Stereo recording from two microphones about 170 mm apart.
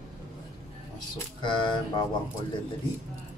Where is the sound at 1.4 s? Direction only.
30° left (ahead or behind).